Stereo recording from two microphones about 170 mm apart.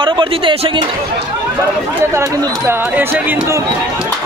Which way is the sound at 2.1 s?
15° right (ahead or behind).